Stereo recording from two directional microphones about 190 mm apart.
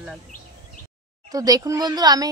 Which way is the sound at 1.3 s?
20° right (ahead or behind).